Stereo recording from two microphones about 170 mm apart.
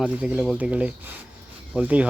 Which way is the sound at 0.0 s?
5° right (ahead or behind).